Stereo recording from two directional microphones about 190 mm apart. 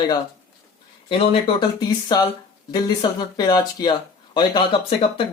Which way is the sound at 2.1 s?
20° left (ahead or behind).